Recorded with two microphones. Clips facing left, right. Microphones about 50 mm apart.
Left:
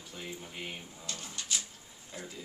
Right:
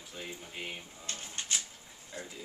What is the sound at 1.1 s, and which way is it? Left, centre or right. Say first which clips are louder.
Speech: right 1 dB; right.